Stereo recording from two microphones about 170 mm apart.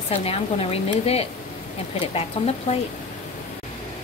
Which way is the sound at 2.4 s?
35° left (ahead or behind).